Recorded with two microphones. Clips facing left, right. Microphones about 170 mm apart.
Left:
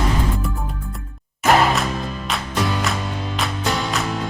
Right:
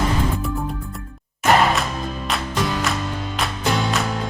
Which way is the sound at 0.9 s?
Centre (ahead or behind).